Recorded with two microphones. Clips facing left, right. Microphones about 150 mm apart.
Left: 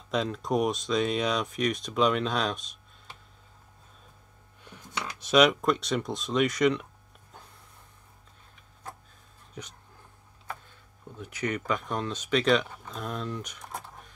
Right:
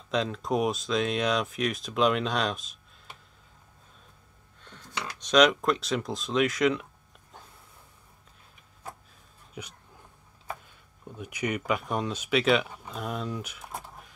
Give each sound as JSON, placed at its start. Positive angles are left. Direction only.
{"t": 0.1, "sound": "speech", "side_deg": 0}
{"t": 4.6, "sound": "speech", "side_deg": 10}
{"t": 9.5, "sound": "a sound", "side_deg": -10}
{"t": 11.1, "sound": "speech", "side_deg": -15}